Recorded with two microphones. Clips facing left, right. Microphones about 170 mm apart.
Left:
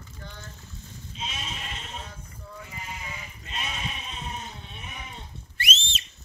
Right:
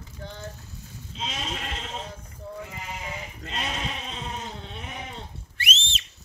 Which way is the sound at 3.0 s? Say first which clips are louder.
Right 5 dB; 80° right.